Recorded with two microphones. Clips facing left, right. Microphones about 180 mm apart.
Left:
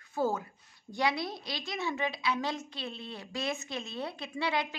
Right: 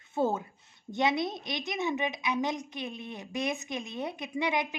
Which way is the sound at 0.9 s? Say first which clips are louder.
Right 3 dB; 20° right (ahead or behind).